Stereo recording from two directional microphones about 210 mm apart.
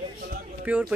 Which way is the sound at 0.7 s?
5° right (ahead or behind).